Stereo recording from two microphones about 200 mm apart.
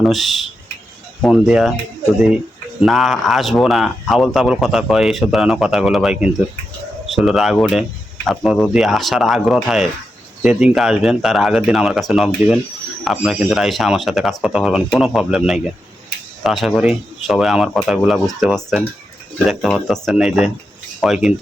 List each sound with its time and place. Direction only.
0.0 s speech: centre (ahead or behind)
2.8 s speech: centre (ahead or behind)